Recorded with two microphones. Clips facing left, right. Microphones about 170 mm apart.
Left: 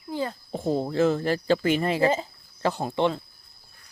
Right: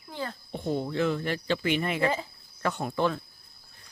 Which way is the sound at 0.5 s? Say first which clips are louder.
Left 4 dB; 35° left (ahead or behind).